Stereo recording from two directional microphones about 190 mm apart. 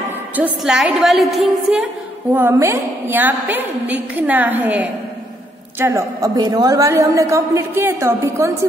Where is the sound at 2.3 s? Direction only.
15° right (ahead or behind).